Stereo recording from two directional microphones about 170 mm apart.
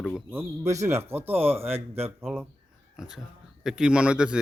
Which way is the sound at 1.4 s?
35° right (ahead or behind).